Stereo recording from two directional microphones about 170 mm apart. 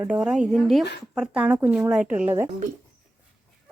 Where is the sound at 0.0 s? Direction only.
5° right (ahead or behind).